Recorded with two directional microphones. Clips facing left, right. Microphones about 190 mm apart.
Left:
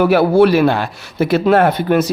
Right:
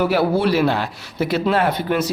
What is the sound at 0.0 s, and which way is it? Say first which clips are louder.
Speech: left 7 dB; 60° left (ahead or behind).